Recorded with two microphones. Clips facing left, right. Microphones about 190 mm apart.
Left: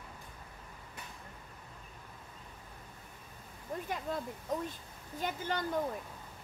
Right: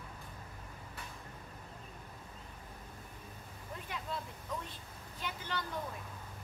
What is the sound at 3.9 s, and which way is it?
Speech, 45° left (ahead or behind).